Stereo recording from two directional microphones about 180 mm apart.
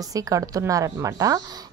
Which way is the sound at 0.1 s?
20° right (ahead or behind).